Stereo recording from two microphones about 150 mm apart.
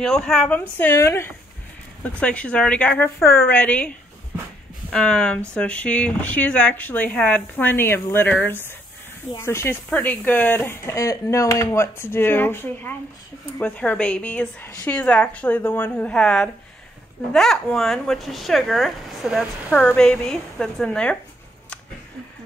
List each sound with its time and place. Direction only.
0.0 s speech: 5° left (ahead or behind)
4.9 s speech: 5° left (ahead or behind)
19.7 s speech: 10° left (ahead or behind)